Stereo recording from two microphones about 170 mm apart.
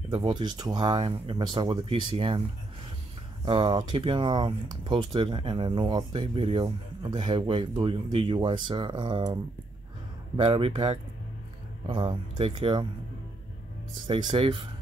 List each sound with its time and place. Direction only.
0.1 s speech: 30° right (ahead or behind)
14.0 s speech: 30° right (ahead or behind)